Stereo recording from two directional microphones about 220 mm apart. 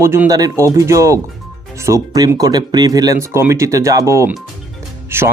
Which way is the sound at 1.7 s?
15° right (ahead or behind).